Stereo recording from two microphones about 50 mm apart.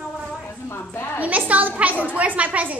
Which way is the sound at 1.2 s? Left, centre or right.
Right.